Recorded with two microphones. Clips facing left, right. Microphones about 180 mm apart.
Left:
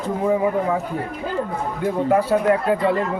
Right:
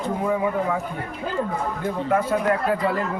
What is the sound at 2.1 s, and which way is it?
Speech, 30° left (ahead or behind).